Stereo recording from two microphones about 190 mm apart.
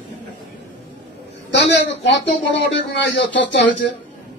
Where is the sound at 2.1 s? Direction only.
70° left (ahead or behind).